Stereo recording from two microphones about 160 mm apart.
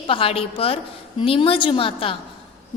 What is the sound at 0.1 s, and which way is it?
A woman's voice, 35° left (ahead or behind).